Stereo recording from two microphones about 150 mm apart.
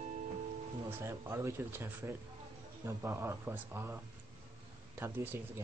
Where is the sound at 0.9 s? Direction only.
15° right (ahead or behind).